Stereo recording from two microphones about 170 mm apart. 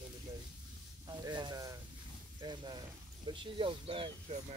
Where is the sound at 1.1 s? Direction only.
25° right (ahead or behind).